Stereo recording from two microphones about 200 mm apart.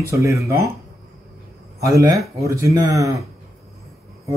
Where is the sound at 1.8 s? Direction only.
15° right (ahead or behind).